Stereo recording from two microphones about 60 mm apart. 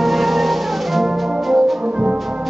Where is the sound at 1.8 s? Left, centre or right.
Centre.